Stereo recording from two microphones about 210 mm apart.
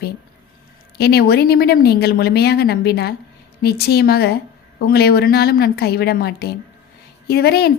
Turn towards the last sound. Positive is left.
turn(degrees=50)  # may be behind; listen again after turning